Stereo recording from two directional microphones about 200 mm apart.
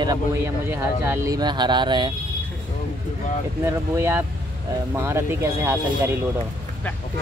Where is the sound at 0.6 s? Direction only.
10° right (ahead or behind).